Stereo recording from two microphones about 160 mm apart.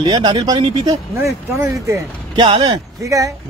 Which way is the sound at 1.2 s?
15° right (ahead or behind).